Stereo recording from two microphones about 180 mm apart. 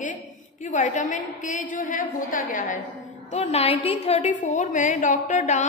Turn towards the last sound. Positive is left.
turn(degrees=45)  # may be behind; listen again after turning